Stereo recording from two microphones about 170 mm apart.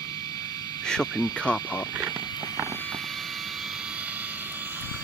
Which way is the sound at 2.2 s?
25° left (ahead or behind).